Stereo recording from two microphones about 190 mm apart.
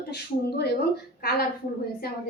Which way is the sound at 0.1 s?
60° left (ahead or behind).